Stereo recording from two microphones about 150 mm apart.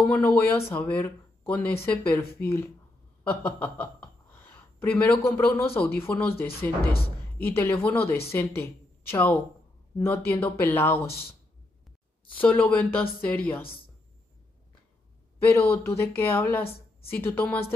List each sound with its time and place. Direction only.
0.0 s a woman's voice: 10° left (ahead or behind)
12.4 s speech: 10° left (ahead or behind)
15.3 s speech: 15° left (ahead or behind)